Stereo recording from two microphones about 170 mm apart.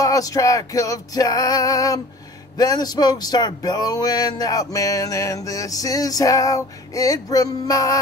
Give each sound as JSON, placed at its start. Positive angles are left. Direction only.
{"t": 0.0, "sound": "speech", "side_deg": 20}